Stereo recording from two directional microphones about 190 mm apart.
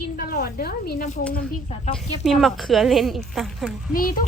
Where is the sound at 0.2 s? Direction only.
50° left (ahead or behind).